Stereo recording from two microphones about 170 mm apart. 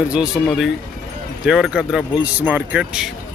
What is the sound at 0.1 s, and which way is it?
Speech, centre (ahead or behind).